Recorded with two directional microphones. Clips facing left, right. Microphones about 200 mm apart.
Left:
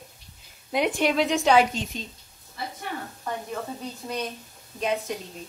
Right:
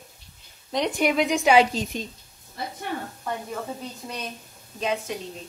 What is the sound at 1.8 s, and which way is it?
Speech, 40° right (ahead or behind).